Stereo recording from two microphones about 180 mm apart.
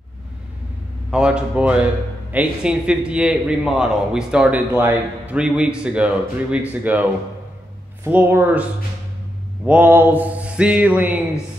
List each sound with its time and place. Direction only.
1.1 s a man's voice: 5° right (ahead or behind)
9.7 s speech: 10° right (ahead or behind)